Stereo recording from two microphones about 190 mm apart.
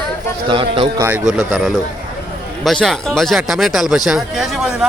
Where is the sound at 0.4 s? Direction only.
25° right (ahead or behind).